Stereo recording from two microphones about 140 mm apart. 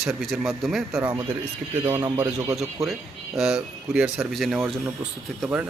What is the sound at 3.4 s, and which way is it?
Speech, 5° right (ahead or behind).